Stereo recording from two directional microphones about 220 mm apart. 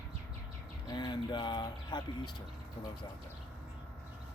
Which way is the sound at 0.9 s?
20° left (ahead or behind).